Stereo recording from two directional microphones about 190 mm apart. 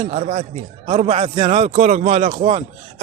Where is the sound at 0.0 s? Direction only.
35° right (ahead or behind).